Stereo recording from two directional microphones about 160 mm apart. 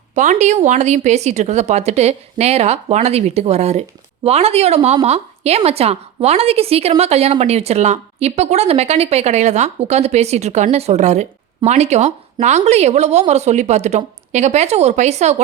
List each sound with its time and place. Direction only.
0.1 s a woman's voice: 50° right (ahead or behind)